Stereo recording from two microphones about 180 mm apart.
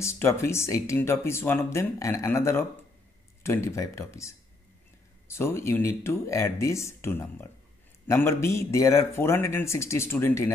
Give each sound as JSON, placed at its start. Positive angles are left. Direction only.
{"t": 0.0, "sound": "speech", "side_deg": 15}